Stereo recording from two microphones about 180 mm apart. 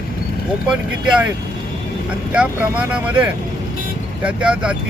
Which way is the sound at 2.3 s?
5° right (ahead or behind).